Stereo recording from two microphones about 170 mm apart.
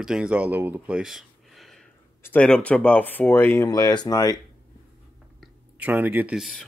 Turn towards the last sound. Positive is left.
turn(degrees=0)  # may be behind; listen again after turning